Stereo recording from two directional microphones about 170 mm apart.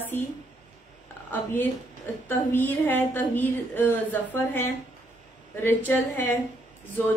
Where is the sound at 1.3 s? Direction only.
10° left (ahead or behind).